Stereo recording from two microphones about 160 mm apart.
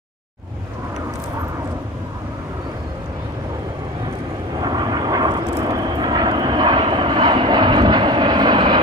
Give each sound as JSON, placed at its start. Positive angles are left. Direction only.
{"t": 4.6, "sound": "vehicle", "side_deg": -25}